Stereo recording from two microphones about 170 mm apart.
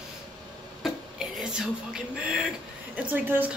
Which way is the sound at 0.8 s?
Centre (ahead or behind).